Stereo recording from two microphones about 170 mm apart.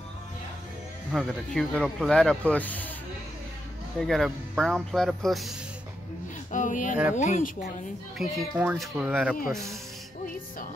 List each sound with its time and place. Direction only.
1.1 s speech: centre (ahead or behind)
4.0 s speech: centre (ahead or behind)
6.5 s speech: 50° left (ahead or behind)
8.2 s speech: 5° right (ahead or behind)